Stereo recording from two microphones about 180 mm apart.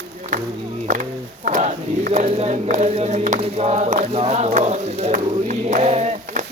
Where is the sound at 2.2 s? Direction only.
35° right (ahead or behind).